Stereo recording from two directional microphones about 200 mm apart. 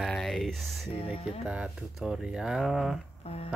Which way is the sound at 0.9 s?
30° left (ahead or behind).